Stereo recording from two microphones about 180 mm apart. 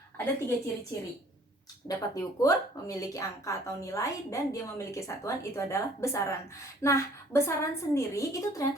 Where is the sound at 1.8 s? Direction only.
20° left (ahead or behind).